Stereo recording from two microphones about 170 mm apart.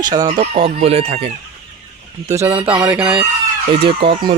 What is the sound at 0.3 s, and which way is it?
Speech, 35° right (ahead or behind).